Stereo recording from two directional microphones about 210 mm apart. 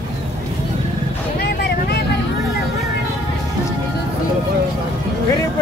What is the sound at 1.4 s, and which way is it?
Vehicle, 50° left (ahead or behind).